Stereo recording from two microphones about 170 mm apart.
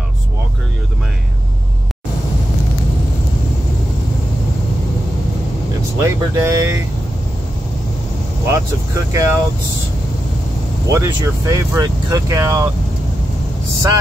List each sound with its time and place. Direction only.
5.9 s speech: 20° right (ahead or behind)
8.5 s speech: 20° right (ahead or behind)
10.9 s speech: 15° right (ahead or behind)